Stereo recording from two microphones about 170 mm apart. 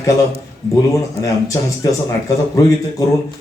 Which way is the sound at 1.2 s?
20° left (ahead or behind).